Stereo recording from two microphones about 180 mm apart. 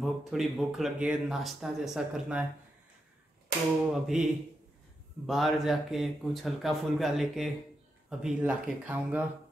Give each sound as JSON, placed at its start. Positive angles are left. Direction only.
{"t": 0.0, "sound": "speech", "side_deg": 0}
{"t": 3.9, "sound": "speech", "side_deg": -5}